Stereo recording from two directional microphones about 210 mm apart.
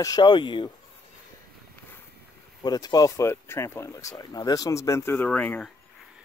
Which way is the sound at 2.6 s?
20° left (ahead or behind).